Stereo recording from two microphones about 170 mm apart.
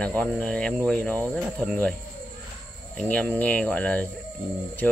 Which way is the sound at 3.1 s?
10° left (ahead or behind).